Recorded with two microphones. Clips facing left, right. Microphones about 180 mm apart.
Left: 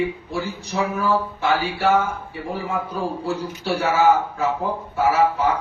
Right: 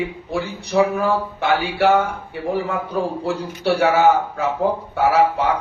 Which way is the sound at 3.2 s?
65° right (ahead or behind).